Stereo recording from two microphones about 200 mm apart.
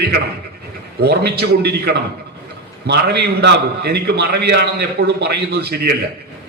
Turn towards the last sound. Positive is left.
turn(degrees=-50)  # may be behind; listen again after turning